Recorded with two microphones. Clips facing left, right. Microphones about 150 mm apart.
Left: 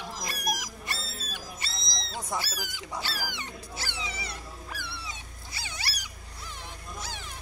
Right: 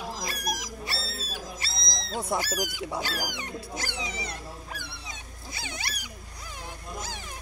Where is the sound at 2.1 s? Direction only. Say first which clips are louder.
Right 5 dB; 55° right (ahead or behind).